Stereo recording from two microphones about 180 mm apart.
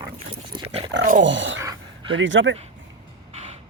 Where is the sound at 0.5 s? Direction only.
30° right (ahead or behind).